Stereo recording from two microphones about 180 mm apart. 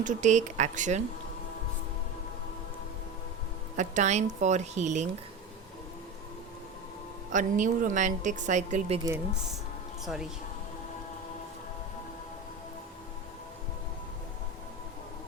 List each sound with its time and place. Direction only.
0.0 s speech: 40° right (ahead or behind)
3.8 s speech: 40° right (ahead or behind)
7.3 s speech: 45° right (ahead or behind)